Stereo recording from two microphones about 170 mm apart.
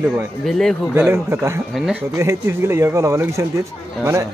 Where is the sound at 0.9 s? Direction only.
10° right (ahead or behind).